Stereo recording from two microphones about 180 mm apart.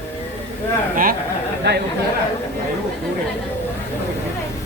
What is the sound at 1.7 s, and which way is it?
Speech, 70° right (ahead or behind).